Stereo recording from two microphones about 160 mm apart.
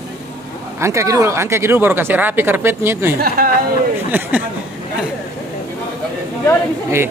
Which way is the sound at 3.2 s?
70° right (ahead or behind).